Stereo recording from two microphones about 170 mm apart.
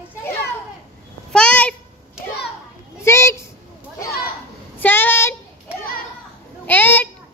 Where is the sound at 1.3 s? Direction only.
5° left (ahead or behind).